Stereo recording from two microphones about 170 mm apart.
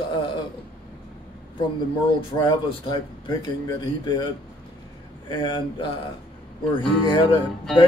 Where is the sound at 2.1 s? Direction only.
25° left (ahead or behind).